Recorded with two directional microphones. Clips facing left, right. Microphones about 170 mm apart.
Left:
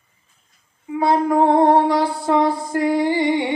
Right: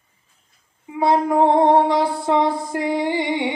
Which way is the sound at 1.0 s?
20° right (ahead or behind).